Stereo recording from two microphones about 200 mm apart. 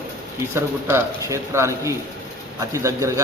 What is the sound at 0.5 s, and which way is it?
A man's voice, 15° right (ahead or behind).